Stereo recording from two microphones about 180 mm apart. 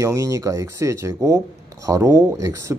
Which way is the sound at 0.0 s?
15° right (ahead or behind).